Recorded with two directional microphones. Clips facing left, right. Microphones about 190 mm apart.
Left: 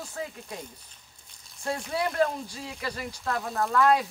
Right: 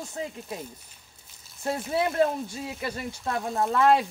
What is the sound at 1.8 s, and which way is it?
Speech, 25° right (ahead or behind).